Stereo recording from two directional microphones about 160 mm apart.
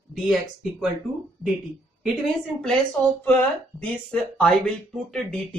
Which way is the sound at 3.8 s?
5° left (ahead or behind).